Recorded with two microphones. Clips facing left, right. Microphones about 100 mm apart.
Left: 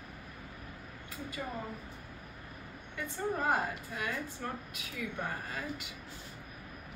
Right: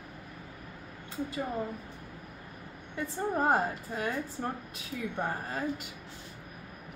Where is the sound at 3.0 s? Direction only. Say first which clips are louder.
Right 4 dB; 35° right (ahead or behind).